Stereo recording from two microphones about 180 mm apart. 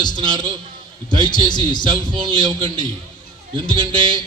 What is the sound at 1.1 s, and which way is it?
Speech, 25° left (ahead or behind).